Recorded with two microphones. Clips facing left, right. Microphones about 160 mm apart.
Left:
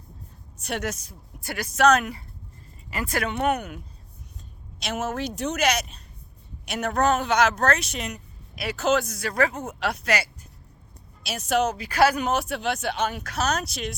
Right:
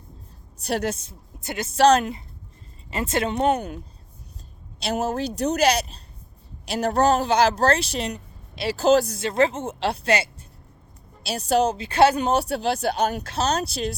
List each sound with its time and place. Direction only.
0.6 s a woman's voice: 35° right (ahead or behind)
4.8 s speech: 35° right (ahead or behind)
13.2 s speech: 30° right (ahead or behind)